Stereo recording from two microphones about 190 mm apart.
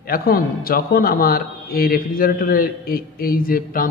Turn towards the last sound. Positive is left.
turn(degrees=50)  # may be behind; listen again after turning